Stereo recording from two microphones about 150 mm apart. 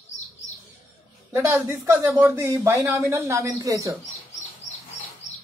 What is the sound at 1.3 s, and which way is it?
Speech, 20° right (ahead or behind).